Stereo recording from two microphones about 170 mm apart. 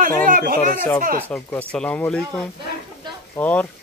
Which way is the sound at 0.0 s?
55° right (ahead or behind).